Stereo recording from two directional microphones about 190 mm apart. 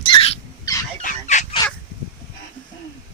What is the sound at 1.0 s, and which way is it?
Fowl, 40° left (ahead or behind).